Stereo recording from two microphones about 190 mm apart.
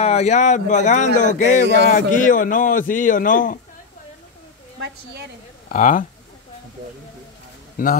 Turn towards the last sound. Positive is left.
turn(degrees=45)  # may be behind; listen again after turning